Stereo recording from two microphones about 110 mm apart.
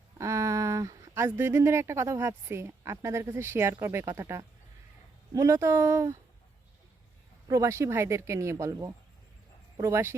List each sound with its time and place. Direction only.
0.2 s a woman's voice: 30° right (ahead or behind)
7.4 s speech: 30° right (ahead or behind)